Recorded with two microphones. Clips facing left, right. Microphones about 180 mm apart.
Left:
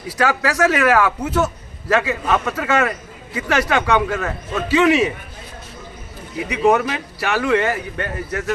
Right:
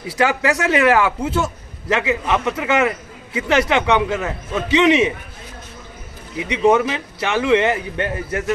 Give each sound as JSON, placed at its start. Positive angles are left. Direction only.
{"t": 0.2, "sound": "a man's voice", "side_deg": -25}
{"t": 6.4, "sound": "a man's voice", "side_deg": -20}